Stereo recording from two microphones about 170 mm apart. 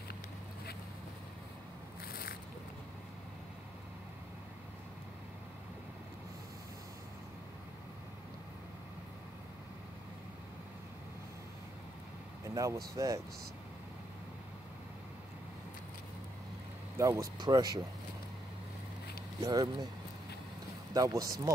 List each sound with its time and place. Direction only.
12.4 s vehicle: 20° right (ahead or behind)
12.9 s speech: 20° right (ahead or behind)
16.9 s speech: 20° right (ahead or behind)
19.4 s speech: 25° right (ahead or behind)
20.9 s speech: 20° right (ahead or behind)